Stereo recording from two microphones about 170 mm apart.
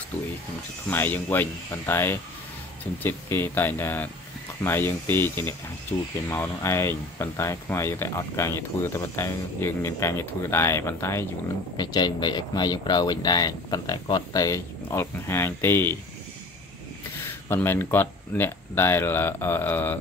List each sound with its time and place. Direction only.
0.8 s speech: 10° left (ahead or behind)
17.5 s speech: 15° left (ahead or behind)